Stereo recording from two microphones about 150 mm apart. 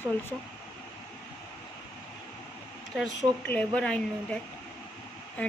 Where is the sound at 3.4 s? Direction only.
10° left (ahead or behind).